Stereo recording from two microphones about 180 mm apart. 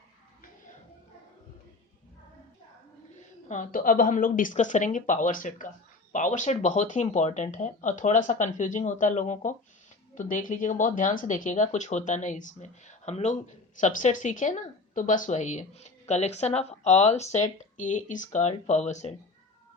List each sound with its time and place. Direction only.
3.5 s speech: 50° left (ahead or behind)